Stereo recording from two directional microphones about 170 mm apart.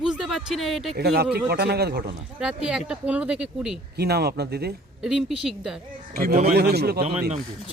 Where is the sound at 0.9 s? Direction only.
70° right (ahead or behind).